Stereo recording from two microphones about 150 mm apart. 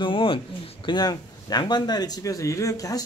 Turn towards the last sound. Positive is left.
turn(degrees=25)  # may be behind; listen again after turning